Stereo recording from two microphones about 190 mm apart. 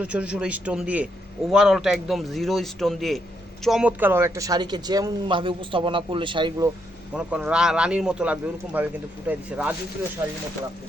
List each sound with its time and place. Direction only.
0.0 s a man's voice: 5° right (ahead or behind); by 6.7 s 25° right (ahead or behind)
7.1 s speech: 5° right (ahead or behind)